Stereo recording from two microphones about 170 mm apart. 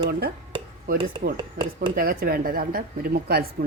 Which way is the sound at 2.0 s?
60° right (ahead or behind).